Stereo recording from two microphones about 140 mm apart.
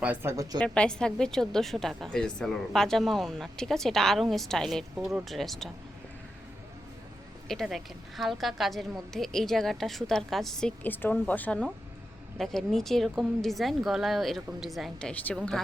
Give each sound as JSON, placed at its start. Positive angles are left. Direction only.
{"t": 0.0, "sound": "a woman's voice", "side_deg": -15}
{"t": 0.6, "sound": "a woman's voice", "side_deg": 5}
{"t": 7.4, "sound": "a woman's voice", "side_deg": 0}